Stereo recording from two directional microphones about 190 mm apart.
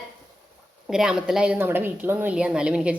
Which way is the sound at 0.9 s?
5° right (ahead or behind).